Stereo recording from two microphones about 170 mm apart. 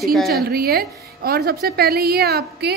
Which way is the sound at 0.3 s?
65° right (ahead or behind).